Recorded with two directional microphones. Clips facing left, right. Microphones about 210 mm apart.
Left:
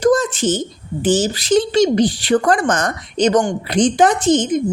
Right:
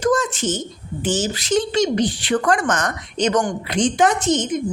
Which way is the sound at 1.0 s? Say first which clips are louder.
Left 6 dB; 35° left (ahead or behind).